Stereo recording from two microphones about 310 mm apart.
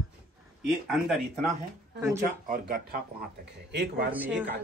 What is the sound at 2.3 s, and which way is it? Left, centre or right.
Speech, right.